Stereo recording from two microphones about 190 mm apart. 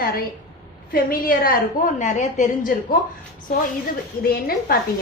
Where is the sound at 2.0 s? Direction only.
40° left (ahead or behind).